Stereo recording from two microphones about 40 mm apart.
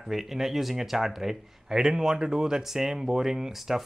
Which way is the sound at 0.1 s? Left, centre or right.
Centre.